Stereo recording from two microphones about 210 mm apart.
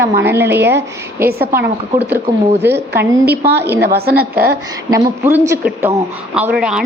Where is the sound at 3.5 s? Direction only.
10° right (ahead or behind).